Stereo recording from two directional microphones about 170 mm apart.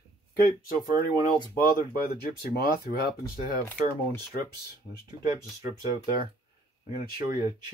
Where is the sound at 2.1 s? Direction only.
65° left (ahead or behind).